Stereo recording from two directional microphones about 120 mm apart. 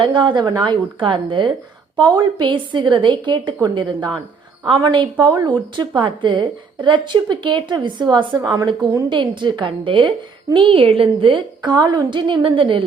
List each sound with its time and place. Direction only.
0.0 s a woman's voice: 40° right (ahead or behind)